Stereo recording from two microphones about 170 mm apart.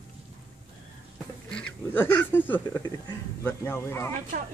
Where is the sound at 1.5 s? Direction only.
10° left (ahead or behind).